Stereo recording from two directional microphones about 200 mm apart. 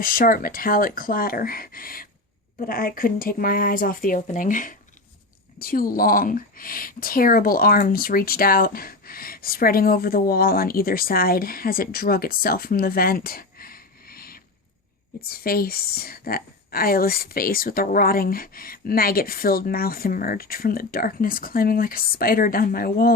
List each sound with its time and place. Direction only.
0.0 s speech: 45° left (ahead or behind)